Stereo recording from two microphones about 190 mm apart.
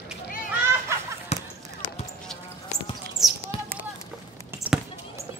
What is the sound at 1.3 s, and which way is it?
Basketball bounce, 35° left (ahead or behind).